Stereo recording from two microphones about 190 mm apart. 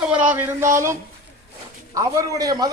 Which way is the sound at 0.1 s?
10° right (ahead or behind).